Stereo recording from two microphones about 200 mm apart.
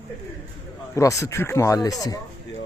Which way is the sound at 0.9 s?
15° left (ahead or behind).